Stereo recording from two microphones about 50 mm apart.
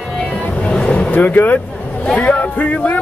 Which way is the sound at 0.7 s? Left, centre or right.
Left.